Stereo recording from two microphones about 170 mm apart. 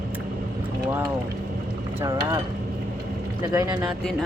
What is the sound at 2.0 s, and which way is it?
Speech, 20° right (ahead or behind).